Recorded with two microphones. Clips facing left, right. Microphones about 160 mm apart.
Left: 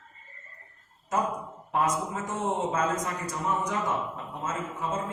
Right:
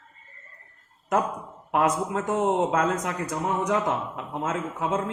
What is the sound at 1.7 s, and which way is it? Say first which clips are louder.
Speech: right 4 dB; 65° right (ahead or behind).